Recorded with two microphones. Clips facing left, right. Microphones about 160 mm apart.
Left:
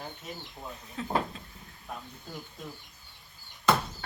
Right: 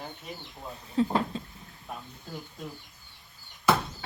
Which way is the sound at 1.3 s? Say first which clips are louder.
Right 10 dB; 30° right (ahead or behind).